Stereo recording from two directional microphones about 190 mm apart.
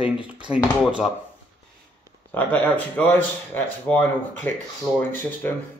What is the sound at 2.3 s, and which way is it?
Speech, 10° left (ahead or behind).